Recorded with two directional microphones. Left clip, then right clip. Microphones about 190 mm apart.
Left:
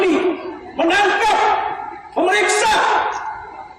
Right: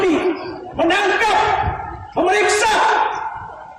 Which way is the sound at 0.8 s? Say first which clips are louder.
Left 1 dB; 15° left (ahead or behind).